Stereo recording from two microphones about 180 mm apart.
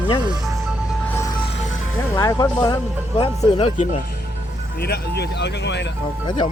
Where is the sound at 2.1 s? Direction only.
20° left (ahead or behind).